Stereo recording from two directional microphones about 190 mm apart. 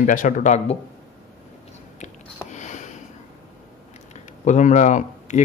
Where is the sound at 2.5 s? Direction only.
40° left (ahead or behind).